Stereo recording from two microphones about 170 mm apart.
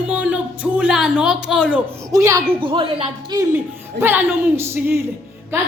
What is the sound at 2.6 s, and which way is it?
Speech, 30° right (ahead or behind).